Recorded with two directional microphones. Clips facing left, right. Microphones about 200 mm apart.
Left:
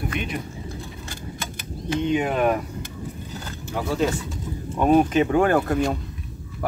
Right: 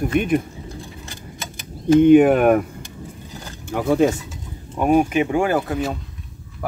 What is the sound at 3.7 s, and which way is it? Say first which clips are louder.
Speech: right 6 dB; 55° right (ahead or behind).